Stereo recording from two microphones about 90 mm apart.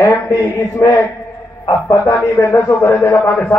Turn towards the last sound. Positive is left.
turn(degrees=20)  # may be behind; listen again after turning